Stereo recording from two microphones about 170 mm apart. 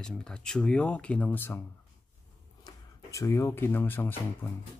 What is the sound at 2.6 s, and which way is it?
Speech, 20° left (ahead or behind).